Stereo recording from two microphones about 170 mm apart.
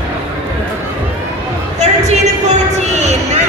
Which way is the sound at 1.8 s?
40° right (ahead or behind).